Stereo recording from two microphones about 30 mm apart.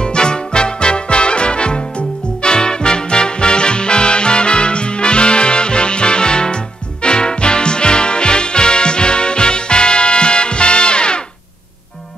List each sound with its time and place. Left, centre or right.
0.0 s music: left